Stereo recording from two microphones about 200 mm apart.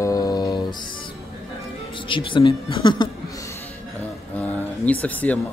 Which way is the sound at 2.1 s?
25° left (ahead or behind).